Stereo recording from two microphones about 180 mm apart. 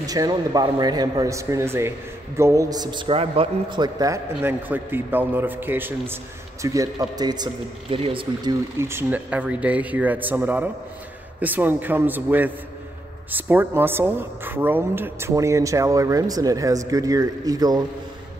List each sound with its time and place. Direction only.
0.0 s a man's voice: 20° right (ahead or behind)
8.7 s speech: 15° right (ahead or behind)